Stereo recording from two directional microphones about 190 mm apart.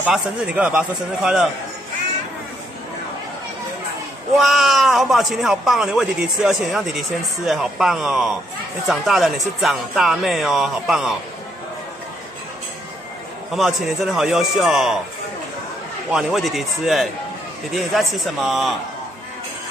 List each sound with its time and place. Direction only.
0.0 s a man's voice: 5° right (ahead or behind)
4.4 s a man's voice: centre (ahead or behind)
13.6 s a man's voice: centre (ahead or behind)
16.1 s a man's voice: centre (ahead or behind)